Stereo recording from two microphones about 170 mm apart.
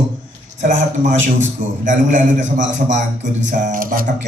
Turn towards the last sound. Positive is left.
turn(degrees=-55)  # may be behind; listen again after turning